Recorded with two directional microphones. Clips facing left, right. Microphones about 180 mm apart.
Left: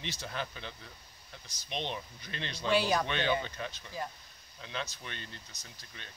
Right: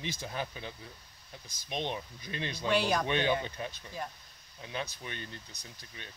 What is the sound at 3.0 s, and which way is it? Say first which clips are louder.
Speech: right 2 dB; 15° right (ahead or behind).